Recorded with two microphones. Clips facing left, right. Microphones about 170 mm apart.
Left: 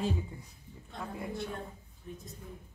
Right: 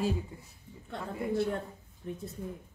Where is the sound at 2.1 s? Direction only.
70° right (ahead or behind).